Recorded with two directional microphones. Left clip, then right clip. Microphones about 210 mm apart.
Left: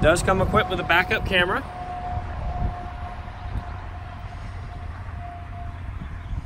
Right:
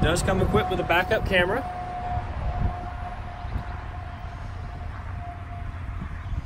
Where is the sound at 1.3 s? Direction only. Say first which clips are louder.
Left 2 dB; 90° left.